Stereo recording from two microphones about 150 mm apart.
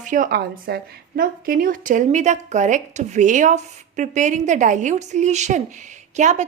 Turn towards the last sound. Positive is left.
turn(degrees=-50)  # may be behind; listen again after turning